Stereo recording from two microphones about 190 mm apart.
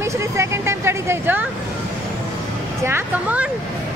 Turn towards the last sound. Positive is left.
turn(degrees=-10)  # may be behind; listen again after turning